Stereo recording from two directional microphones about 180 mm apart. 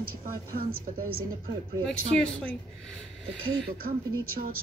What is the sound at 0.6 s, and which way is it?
Speech, 55° right (ahead or behind).